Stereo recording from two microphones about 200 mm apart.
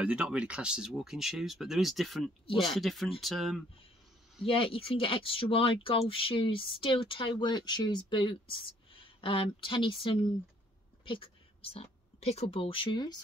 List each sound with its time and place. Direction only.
0.0 s speech: 5° right (ahead or behind)
4.5 s speech: 25° left (ahead or behind)